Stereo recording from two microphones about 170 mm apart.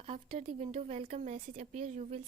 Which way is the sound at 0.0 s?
35° right (ahead or behind).